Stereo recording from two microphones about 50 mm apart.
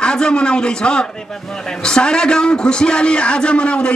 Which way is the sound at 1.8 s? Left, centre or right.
Centre.